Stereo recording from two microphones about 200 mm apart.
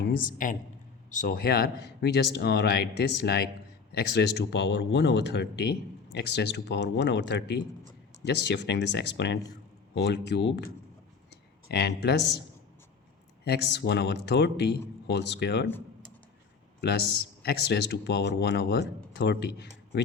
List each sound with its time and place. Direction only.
0.1 s speech: 45° left (ahead or behind); by 10.6 s 60° left (ahead or behind)
11.3 s a sound: 55° left (ahead or behind)
13.4 s speech: 55° left (ahead or behind)
17.4 s speech: 55° left (ahead or behind)